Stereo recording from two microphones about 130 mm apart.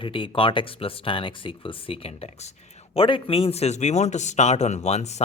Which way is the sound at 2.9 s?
45° left (ahead or behind).